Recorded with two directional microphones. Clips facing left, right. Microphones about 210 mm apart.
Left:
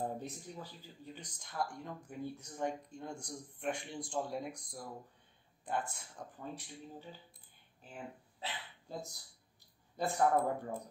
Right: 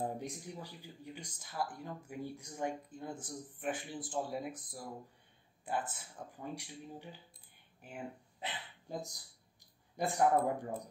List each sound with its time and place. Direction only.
0.0 s speech: 15° right (ahead or behind)